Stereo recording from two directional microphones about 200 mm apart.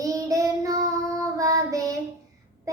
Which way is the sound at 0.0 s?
15° right (ahead or behind).